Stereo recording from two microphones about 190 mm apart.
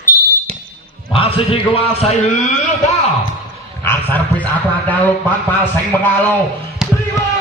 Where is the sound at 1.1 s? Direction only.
30° left (ahead or behind).